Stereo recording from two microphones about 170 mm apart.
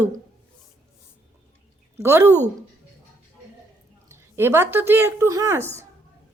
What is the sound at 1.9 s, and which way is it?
Speech, 15° right (ahead or behind).